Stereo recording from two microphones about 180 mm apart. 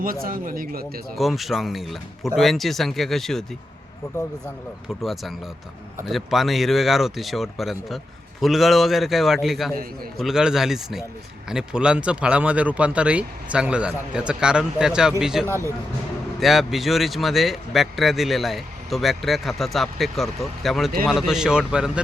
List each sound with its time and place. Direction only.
0.0 s speech: 50° right (ahead or behind)
1.1 s a man's voice: centre (ahead or behind)
4.9 s a man's voice: centre (ahead or behind)
15.4 s speech: 15° right (ahead or behind)
16.4 s a man's voice: centre (ahead or behind)